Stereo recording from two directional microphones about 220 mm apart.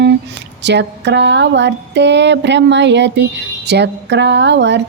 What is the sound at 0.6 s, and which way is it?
Music, 50° right (ahead or behind).